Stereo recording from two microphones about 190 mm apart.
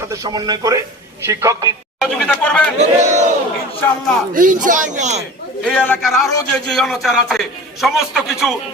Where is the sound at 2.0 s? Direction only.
Centre (ahead or behind).